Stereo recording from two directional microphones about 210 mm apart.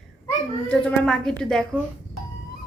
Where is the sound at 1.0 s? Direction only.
5° left (ahead or behind).